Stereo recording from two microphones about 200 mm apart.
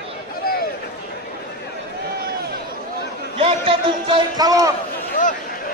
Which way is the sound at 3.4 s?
25° right (ahead or behind).